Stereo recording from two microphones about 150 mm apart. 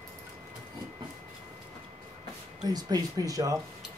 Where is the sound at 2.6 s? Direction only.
25° right (ahead or behind).